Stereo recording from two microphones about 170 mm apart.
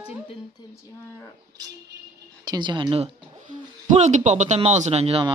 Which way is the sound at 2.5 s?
25° right (ahead or behind).